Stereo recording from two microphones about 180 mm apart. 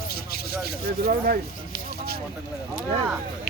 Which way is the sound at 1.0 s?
55° right (ahead or behind).